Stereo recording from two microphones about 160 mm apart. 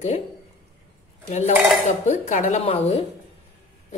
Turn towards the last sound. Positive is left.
turn(degrees=40)  # may be behind; listen again after turning